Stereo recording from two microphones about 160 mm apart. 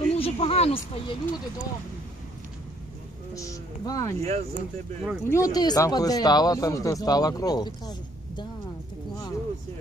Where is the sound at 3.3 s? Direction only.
20° left (ahead or behind).